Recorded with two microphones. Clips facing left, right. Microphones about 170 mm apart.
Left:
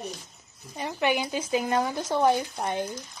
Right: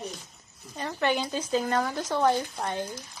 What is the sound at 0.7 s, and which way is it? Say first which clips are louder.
Speech: left 1 dB; 15° left (ahead or behind).